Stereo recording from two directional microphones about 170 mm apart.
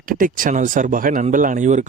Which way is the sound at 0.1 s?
55° right (ahead or behind).